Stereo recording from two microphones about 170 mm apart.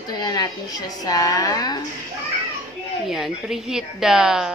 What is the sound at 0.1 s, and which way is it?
A woman's voice, 25° left (ahead or behind).